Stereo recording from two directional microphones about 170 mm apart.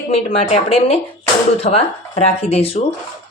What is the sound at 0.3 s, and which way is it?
Speech, 40° left (ahead or behind).